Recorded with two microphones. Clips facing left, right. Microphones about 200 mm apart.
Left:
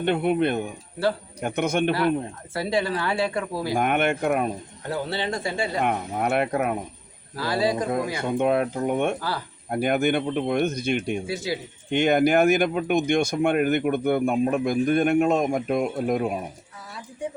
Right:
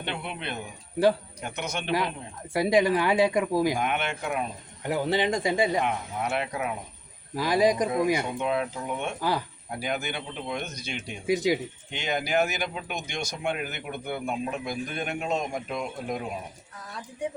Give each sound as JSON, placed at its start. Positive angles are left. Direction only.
{"t": 0.0, "sound": "speech", "side_deg": 50}
{"t": 2.5, "sound": "speech", "side_deg": -15}
{"t": 3.8, "sound": "speech", "side_deg": 50}
{"t": 4.9, "sound": "speech", "side_deg": -15}
{"t": 5.8, "sound": "speech", "side_deg": 55}
{"t": 7.3, "sound": "speech", "side_deg": -15}
{"t": 8.2, "sound": "speech", "side_deg": 55}
{"t": 11.3, "sound": "speech", "side_deg": -15}
{"t": 11.9, "sound": "speech", "side_deg": 55}